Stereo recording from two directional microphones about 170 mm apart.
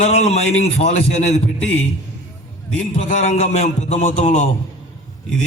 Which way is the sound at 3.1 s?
45° left (ahead or behind).